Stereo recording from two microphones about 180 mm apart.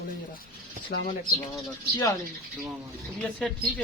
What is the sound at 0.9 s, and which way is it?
Speech, 70° left (ahead or behind).